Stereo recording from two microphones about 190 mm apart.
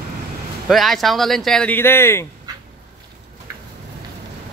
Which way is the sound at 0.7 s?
Centre (ahead or behind).